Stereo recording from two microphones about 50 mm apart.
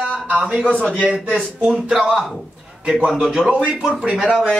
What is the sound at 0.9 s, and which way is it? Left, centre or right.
Speech, right.